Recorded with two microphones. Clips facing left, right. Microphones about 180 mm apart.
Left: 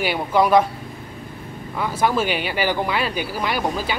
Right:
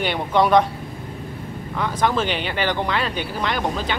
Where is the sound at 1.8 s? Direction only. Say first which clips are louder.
Left 1 dB; 10° left (ahead or behind).